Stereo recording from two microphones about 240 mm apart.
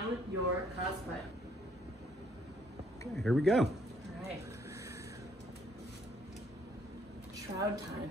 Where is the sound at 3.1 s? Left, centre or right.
Centre.